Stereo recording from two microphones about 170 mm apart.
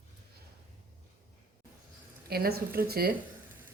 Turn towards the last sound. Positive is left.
turn(degrees=-65)  # may be behind; listen again after turning